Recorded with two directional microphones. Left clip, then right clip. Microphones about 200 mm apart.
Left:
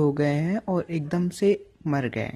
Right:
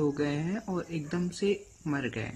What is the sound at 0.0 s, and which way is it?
Speech, 35° left (ahead or behind).